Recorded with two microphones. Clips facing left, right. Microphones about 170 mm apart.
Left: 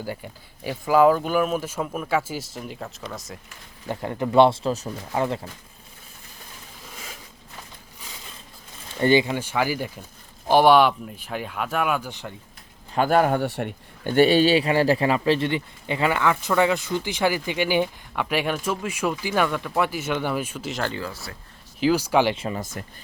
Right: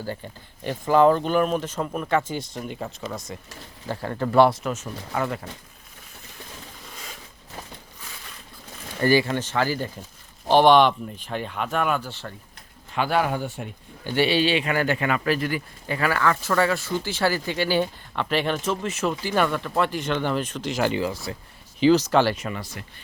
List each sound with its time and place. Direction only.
0.0 s speech: 10° left (ahead or behind)
3.8 s speech: 15° left (ahead or behind)
9.0 s speech: 20° left (ahead or behind)
9.3 s speech: 10° left (ahead or behind)
12.9 s speech: 45° left (ahead or behind)
13.4 s speech: 65° left (ahead or behind); by 20.8 s 5° left (ahead or behind)
20.8 s speech: 15° right (ahead or behind)
21.8 s speech: 5° left (ahead or behind)
22.4 s speech: 30° left (ahead or behind)
22.6 s speech: 45° left (ahead or behind)